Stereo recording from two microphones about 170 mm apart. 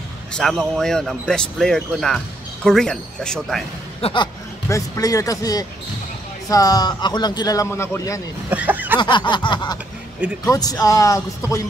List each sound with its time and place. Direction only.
0.3 s speech: centre (ahead or behind)
4.0 s a man's voice: 30° left (ahead or behind)
4.6 s a man's voice: 20° left (ahead or behind)
8.5 s speech: 10° right (ahead or behind)
8.9 s a man's voice: 25° left (ahead or behind)